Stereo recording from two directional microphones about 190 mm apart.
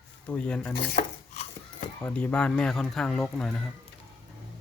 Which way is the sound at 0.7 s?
55° left (ahead or behind).